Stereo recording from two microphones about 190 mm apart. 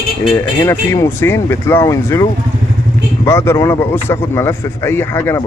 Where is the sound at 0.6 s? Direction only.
15° left (ahead or behind).